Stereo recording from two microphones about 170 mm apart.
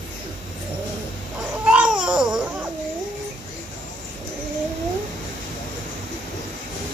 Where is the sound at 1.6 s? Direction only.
5° right (ahead or behind).